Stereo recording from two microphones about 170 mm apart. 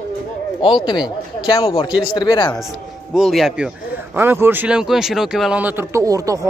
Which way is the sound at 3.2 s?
Centre (ahead or behind).